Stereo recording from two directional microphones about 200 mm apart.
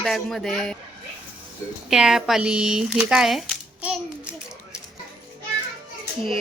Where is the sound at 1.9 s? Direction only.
Centre (ahead or behind).